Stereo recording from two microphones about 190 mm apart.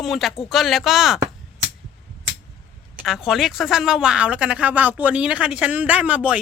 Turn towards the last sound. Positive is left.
turn(degrees=-5)  # may be behind; listen again after turning